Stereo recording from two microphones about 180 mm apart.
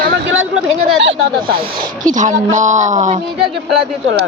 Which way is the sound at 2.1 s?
45° right (ahead or behind).